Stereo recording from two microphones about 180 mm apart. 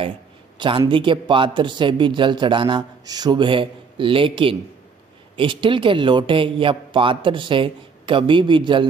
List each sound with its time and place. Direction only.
0.6 s a man's voice: 25° right (ahead or behind)